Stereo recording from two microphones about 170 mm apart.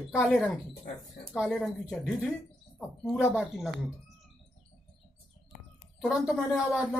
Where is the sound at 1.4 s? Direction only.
Centre (ahead or behind).